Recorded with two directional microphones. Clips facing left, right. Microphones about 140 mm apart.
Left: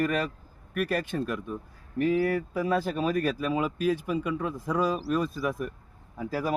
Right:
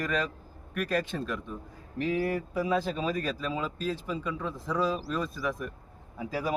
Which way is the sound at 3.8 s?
60° left (ahead or behind).